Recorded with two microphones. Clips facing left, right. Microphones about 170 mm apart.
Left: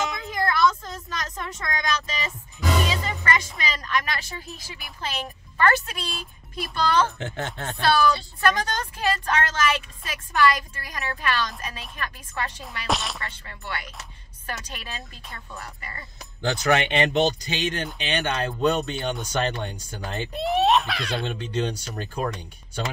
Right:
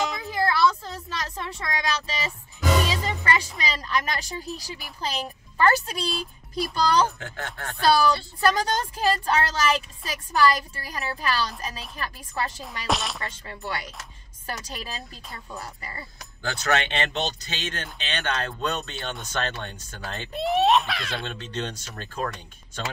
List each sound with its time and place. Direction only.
0.3 s a sound: 30° right (ahead or behind)
2.9 s a woman's voice: 35° right (ahead or behind)
7.2 s speech: 20° left (ahead or behind)
7.8 s a woman's voice: 35° right (ahead or behind)
12.8 s a child's voice: centre (ahead or behind)
13.2 s a woman's voice: 40° right (ahead or behind)
16.4 s speech: 15° left (ahead or behind)
20.3 s a child's voice: centre (ahead or behind)
21.3 s speech: 10° left (ahead or behind)